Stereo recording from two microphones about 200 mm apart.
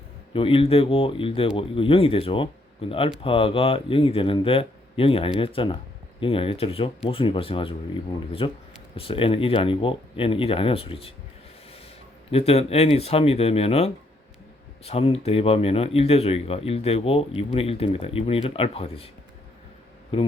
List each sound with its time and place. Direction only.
0.3 s speech: 25° left (ahead or behind)
12.3 s speech: 30° left (ahead or behind)
20.1 s speech: 30° left (ahead or behind)